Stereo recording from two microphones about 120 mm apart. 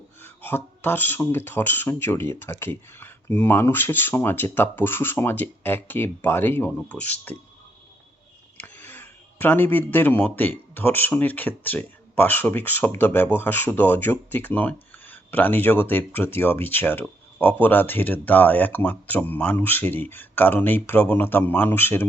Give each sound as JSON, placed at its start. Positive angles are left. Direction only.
{"t": 0.2, "sound": "speech", "side_deg": 15}
{"t": 6.7, "sound": "speech", "side_deg": 5}
{"t": 8.5, "sound": "speech", "side_deg": 15}